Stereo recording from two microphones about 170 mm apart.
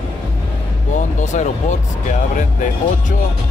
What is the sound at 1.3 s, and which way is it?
Speech, 45° left (ahead or behind).